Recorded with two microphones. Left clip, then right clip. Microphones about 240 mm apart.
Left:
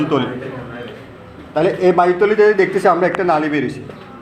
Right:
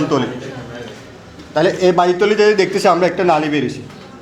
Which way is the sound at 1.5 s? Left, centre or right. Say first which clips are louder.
Right 1 dB; right.